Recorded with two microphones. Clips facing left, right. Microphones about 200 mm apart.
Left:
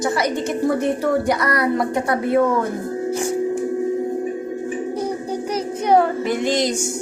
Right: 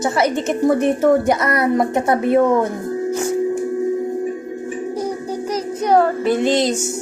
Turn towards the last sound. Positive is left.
turn(degrees=10)  # may be behind; listen again after turning